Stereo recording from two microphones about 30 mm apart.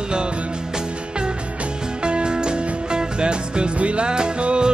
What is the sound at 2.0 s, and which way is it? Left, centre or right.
Music, right.